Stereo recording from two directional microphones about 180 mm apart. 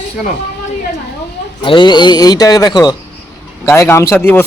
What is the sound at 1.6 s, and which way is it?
A man's voice, 30° left (ahead or behind).